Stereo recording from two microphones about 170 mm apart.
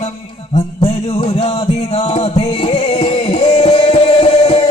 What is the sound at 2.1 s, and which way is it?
Music, 35° left (ahead or behind).